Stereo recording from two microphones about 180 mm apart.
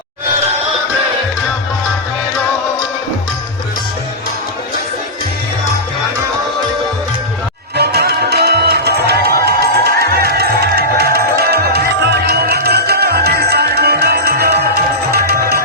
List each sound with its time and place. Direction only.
7.8 s music: 65° right (ahead or behind)